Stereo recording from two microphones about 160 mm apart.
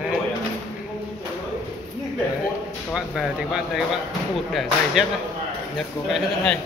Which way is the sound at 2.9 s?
5° right (ahead or behind).